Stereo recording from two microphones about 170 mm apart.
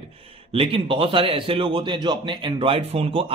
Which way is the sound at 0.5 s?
35° right (ahead or behind).